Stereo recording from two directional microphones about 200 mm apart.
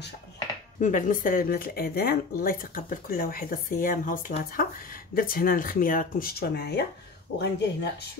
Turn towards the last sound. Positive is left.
turn(degrees=55)  # may be behind; listen again after turning